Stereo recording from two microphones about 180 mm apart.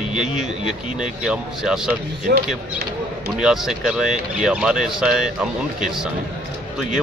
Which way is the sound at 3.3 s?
5° right (ahead or behind).